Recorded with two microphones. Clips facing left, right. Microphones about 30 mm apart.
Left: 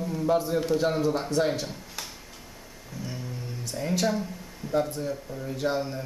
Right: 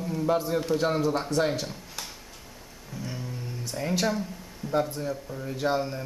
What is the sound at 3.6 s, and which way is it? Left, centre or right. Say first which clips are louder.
Speech: even; centre.